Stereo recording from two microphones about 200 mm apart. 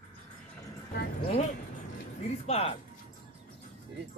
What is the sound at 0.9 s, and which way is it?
Speech, 55° left (ahead or behind).